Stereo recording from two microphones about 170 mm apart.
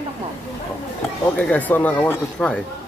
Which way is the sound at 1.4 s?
10° left (ahead or behind).